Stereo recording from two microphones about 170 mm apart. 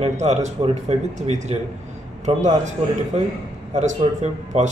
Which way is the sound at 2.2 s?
45° right (ahead or behind).